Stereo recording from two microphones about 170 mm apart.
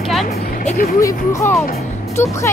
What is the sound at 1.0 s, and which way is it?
Speech, 20° left (ahead or behind).